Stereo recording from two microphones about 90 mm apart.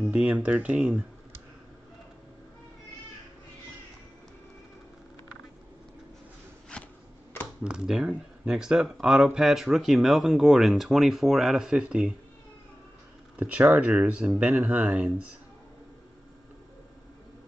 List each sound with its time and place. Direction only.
0.1 s speech: 10° right (ahead or behind)
6.7 s a sound: 15° left (ahead or behind)
7.6 s speech: 5° right (ahead or behind)
13.4 s speech: 15° right (ahead or behind)